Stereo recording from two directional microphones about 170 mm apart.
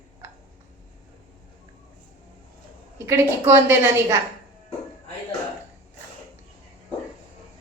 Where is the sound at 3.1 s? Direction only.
15° right (ahead or behind).